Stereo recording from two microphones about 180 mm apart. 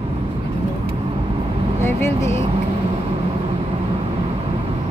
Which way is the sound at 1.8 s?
15° left (ahead or behind).